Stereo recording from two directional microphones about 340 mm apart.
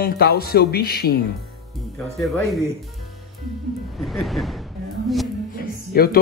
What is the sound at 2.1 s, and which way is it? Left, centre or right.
Speech, centre.